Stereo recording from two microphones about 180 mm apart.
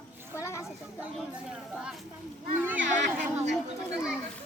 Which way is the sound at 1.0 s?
5° right (ahead or behind).